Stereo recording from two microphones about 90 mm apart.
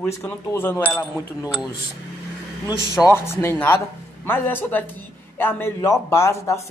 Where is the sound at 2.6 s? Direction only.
40° left (ahead or behind).